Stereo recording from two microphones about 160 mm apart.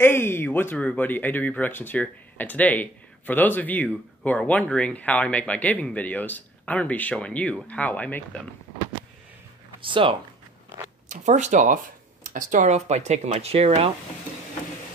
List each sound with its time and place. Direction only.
0.0 s speech: 15° left (ahead or behind)
9.8 s speech: 30° right (ahead or behind)
11.1 s speech: 50° right (ahead or behind)